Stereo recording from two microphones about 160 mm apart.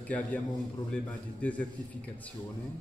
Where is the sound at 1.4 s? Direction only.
10° left (ahead or behind).